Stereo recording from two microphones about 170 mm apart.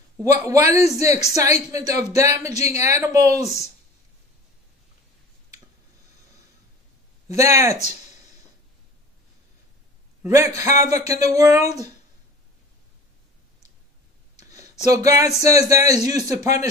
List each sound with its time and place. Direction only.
0.2 s a man's voice: 20° right (ahead or behind)
2.5 s speech: 40° left (ahead or behind)
2.8 s a man's voice: 20° right (ahead or behind)
7.2 s speech: 20° right (ahead or behind)
10.2 s a man's voice: 15° right (ahead or behind)
14.9 s a man's voice: 20° right (ahead or behind)